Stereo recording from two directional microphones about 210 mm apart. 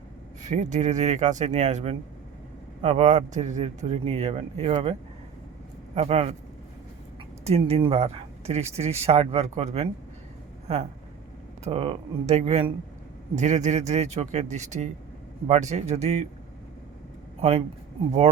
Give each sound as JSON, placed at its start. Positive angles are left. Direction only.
{"t": 0.4, "sound": "speech", "side_deg": -35}
{"t": 7.4, "sound": "speech", "side_deg": -30}